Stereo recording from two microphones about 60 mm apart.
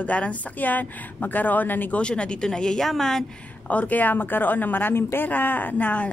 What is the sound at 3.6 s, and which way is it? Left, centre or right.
Speech, left.